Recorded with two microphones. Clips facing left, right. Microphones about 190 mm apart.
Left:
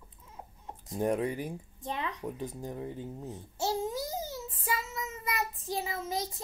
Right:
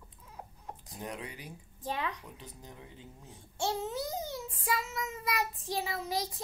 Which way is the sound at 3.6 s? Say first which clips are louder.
Left 2 dB; 10° left (ahead or behind).